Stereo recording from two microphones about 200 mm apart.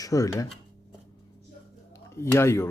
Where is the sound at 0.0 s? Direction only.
15° left (ahead or behind).